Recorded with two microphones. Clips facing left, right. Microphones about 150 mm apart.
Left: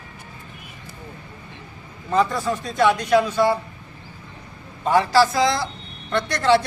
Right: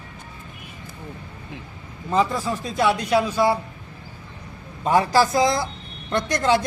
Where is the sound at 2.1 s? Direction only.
5° right (ahead or behind).